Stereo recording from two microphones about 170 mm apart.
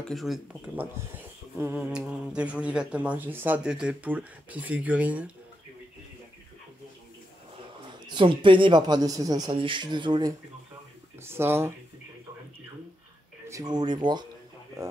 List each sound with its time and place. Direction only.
0.0 s speech: centre (ahead or behind)
7.9 s speech: 30° right (ahead or behind)
11.2 s speech: 15° right (ahead or behind)
13.5 s speech: 20° right (ahead or behind)